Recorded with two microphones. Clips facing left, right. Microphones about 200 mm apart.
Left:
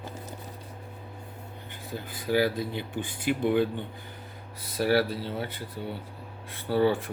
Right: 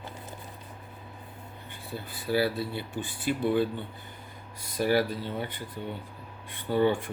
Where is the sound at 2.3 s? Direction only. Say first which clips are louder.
Left 2 dB; 15° left (ahead or behind).